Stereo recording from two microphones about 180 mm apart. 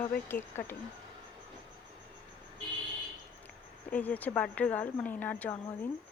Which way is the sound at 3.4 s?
10° left (ahead or behind).